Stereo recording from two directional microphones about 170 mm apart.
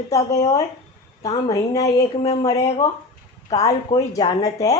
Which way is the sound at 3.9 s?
25° left (ahead or behind).